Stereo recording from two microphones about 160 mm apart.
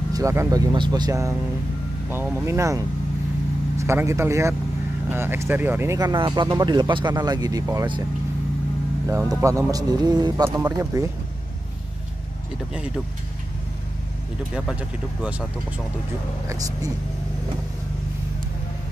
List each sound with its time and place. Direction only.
0.1 s speech: 20° right (ahead or behind)
2.0 s speech: 10° right (ahead or behind)
9.0 s speech: 20° right (ahead or behind)
12.7 s speech: 5° right (ahead or behind)
14.5 s speech: 5° right (ahead or behind)
16.4 s speech: 20° right (ahead or behind)